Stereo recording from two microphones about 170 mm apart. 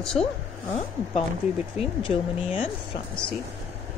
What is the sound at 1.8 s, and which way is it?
Speech, 35° left (ahead or behind).